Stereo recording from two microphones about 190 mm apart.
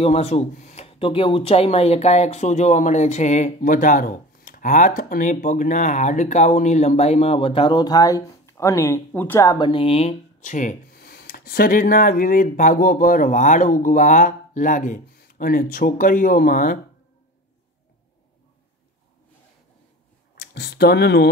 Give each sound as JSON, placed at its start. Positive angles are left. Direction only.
{"t": 0.0, "sound": "speech", "side_deg": 35}
{"t": 20.3, "sound": "speech", "side_deg": 60}